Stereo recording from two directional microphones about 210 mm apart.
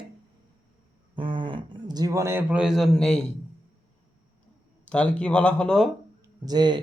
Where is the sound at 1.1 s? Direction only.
25° right (ahead or behind); by 3.2 s centre (ahead or behind).